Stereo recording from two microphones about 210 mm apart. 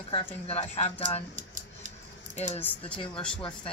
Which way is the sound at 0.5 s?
30° left (ahead or behind).